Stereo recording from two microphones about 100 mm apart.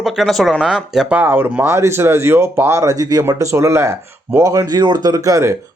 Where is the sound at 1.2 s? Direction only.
20° right (ahead or behind).